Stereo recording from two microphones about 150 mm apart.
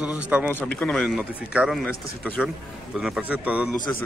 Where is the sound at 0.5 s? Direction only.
10° left (ahead or behind).